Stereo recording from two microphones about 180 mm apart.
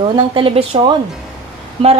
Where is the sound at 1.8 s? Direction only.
30° right (ahead or behind).